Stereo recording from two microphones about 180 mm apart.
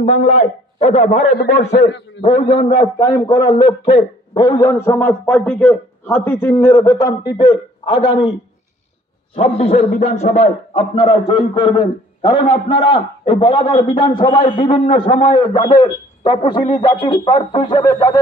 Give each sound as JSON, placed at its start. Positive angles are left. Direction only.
{"t": 0.0, "sound": "a man's voice", "side_deg": 35}
{"t": 1.4, "sound": "a man's voice", "side_deg": 65}
{"t": 2.2, "sound": "a man's voice", "side_deg": 30}
{"t": 9.3, "sound": "a man's voice", "side_deg": 30}
{"t": 10.7, "sound": "a man's voice", "side_deg": 25}